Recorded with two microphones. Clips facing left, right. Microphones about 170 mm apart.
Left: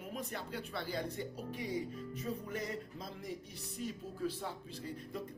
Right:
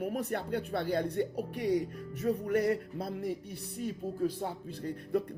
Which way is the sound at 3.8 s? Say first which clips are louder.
Right 7 dB; 50° right (ahead or behind).